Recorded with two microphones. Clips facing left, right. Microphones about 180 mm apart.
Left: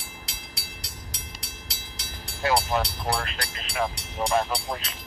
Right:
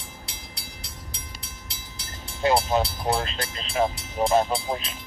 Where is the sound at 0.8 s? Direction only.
80° left.